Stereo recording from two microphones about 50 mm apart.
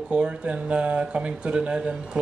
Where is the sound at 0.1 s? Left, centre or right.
Right.